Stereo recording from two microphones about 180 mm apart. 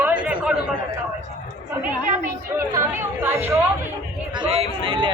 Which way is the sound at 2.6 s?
15° right (ahead or behind).